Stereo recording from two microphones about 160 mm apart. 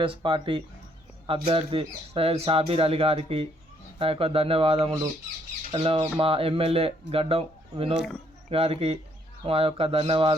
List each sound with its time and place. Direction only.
0.0 s speech: 35° right (ahead or behind)